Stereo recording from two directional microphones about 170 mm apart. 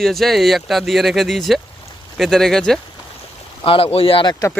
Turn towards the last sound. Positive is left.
turn(degrees=20)  # may be behind; listen again after turning